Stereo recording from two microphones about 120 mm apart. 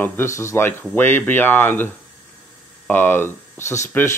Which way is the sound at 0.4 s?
20° left (ahead or behind).